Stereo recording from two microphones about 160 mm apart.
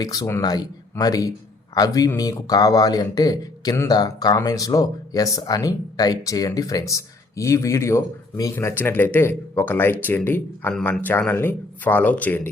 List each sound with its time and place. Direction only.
0.0 s speech: 20° left (ahead or behind)